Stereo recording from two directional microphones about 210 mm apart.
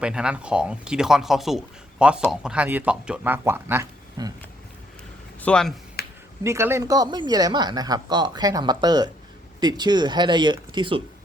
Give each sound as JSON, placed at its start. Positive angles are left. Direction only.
{"t": 0.0, "sound": "speech", "side_deg": -5}
{"t": 5.4, "sound": "speech", "side_deg": 5}
{"t": 6.0, "sound": "a sound", "side_deg": 45}
{"t": 6.4, "sound": "speech", "side_deg": -15}